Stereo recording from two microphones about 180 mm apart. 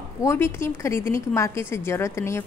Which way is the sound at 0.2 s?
15° left (ahead or behind).